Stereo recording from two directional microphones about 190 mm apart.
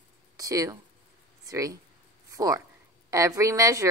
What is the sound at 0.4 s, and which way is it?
A woman's voice, 20° right (ahead or behind).